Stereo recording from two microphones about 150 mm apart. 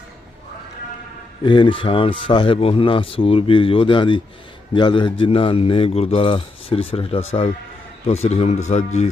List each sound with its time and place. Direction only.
1.5 s speech: 35° left (ahead or behind)